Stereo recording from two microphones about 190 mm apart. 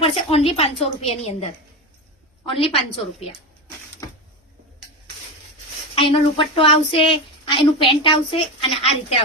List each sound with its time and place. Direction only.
0.0 s a woman's voice: 30° left (ahead or behind)
5.9 s speech: 30° left (ahead or behind)